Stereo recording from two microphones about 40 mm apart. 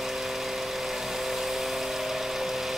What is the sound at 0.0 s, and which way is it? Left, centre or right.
Vehicle, centre.